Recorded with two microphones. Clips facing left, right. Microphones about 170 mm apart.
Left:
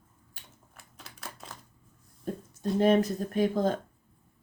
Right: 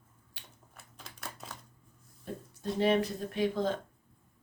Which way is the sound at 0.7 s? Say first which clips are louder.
Even; centre (ahead or behind).